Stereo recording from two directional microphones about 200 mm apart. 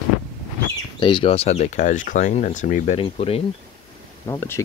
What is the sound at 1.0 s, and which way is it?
Speech, 25° left (ahead or behind).